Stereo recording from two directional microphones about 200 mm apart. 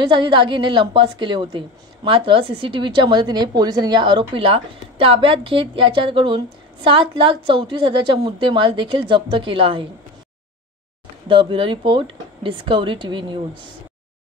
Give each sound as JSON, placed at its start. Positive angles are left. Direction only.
{"t": 0.1, "sound": "a woman's voice", "side_deg": -25}
{"t": 11.2, "sound": "a woman's voice", "side_deg": -25}